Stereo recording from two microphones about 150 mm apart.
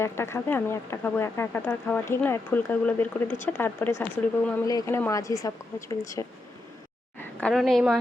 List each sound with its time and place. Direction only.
0.0 s a woman's voice: 15° left (ahead or behind)
7.2 s a woman's voice: 10° left (ahead or behind)